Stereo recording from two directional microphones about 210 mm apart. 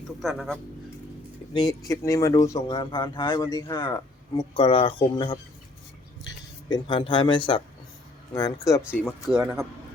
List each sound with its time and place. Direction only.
0.2 s speech: centre (ahead or behind)
1.9 s speech: 15° left (ahead or behind)
8.9 s speech: 5° right (ahead or behind)